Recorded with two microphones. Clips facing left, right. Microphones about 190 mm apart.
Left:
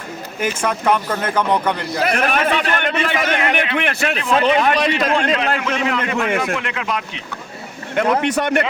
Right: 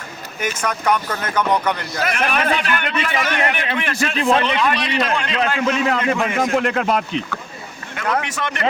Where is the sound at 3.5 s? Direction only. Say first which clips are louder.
Left 3 dB; 60° left (ahead or behind).